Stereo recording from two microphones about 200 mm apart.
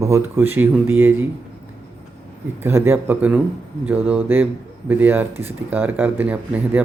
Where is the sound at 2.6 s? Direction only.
10° right (ahead or behind).